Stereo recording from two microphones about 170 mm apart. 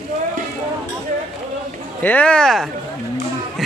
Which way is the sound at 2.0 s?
5° left (ahead or behind).